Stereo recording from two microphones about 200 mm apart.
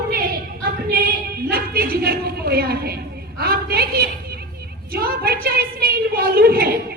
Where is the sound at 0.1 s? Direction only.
50° right (ahead or behind).